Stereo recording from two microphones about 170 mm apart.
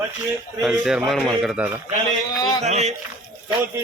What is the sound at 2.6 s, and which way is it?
Speech, 40° right (ahead or behind).